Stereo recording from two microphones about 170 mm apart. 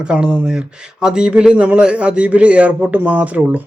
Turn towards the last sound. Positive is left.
turn(degrees=-10)  # may be behind; listen again after turning